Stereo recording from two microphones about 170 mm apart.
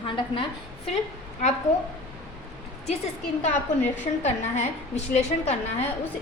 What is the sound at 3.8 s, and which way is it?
A woman's voice, 45° left (ahead or behind).